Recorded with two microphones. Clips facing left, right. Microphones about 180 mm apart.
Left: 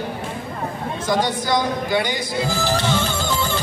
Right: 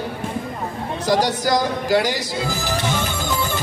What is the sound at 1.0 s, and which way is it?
Speech, 40° right (ahead or behind).